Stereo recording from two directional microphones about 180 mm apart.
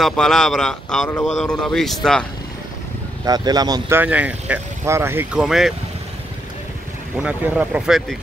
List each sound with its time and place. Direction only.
0.0 s speech: 5° left (ahead or behind)
3.3 s speech: 20° right (ahead or behind)
4.0 s speech: 10° right (ahead or behind)
7.2 s speech: 5° right (ahead or behind)